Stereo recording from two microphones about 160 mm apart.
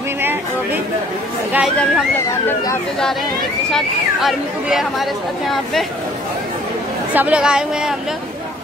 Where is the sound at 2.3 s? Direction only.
15° left (ahead or behind).